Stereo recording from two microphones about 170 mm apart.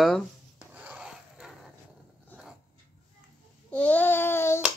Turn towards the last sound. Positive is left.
turn(degrees=15)  # may be behind; listen again after turning